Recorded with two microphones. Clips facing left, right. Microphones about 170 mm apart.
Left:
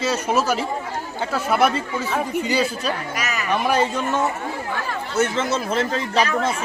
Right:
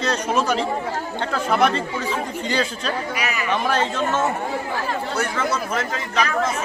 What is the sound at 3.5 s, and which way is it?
Speech, 10° left (ahead or behind).